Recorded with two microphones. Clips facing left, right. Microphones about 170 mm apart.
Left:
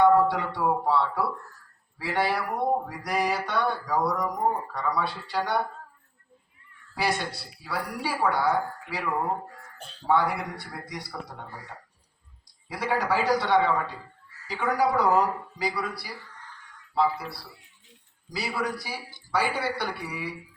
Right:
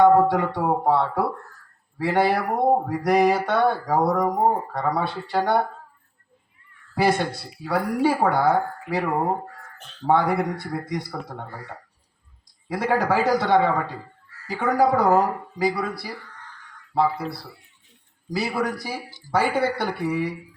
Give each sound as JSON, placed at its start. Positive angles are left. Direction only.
{"t": 0.0, "sound": "speech", "side_deg": -45}
{"t": 6.9, "sound": "speech", "side_deg": -50}
{"t": 18.3, "sound": "speech", "side_deg": -50}